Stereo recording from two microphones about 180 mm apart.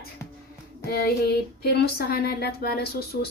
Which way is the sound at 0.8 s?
60° left (ahead or behind).